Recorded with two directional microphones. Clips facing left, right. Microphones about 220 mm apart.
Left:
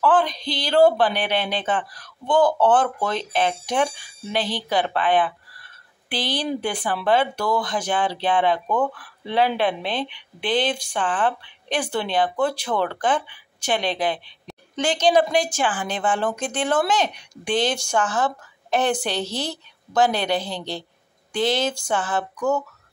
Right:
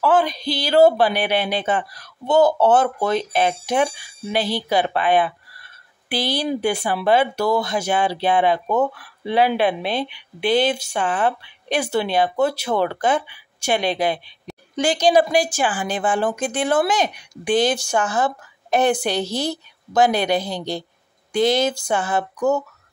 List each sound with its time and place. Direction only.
0.0 s speech: 10° right (ahead or behind)